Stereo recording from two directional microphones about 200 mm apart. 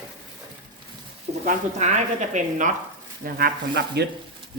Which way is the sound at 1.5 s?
35° right (ahead or behind).